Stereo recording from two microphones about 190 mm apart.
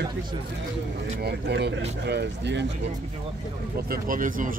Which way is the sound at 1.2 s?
60° right (ahead or behind).